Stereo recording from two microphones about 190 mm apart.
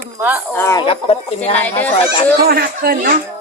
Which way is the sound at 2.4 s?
55° right (ahead or behind).